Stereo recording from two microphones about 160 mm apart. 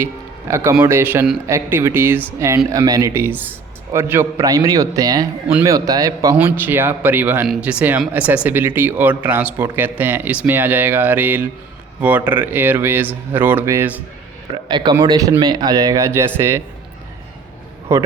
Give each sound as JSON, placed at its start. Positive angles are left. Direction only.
{"t": 0.0, "sound": "a man's voice", "side_deg": -15}
{"t": 6.3, "sound": "a man's voice", "side_deg": -10}
{"t": 14.5, "sound": "speech", "side_deg": -30}
{"t": 17.9, "sound": "a man's voice", "side_deg": -15}